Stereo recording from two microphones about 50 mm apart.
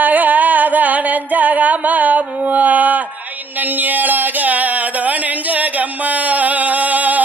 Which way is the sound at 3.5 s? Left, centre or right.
Right.